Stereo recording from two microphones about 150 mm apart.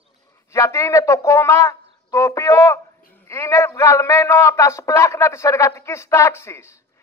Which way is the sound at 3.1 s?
20° left (ahead or behind).